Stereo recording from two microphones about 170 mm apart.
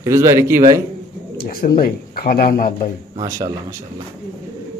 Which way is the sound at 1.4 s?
60° left (ahead or behind).